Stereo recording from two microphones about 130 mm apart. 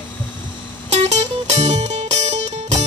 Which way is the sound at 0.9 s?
60° right (ahead or behind).